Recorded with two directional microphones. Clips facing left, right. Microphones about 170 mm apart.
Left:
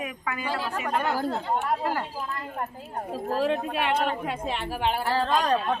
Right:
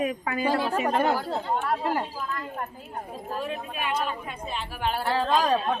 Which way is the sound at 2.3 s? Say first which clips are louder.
Even; 30° left (ahead or behind).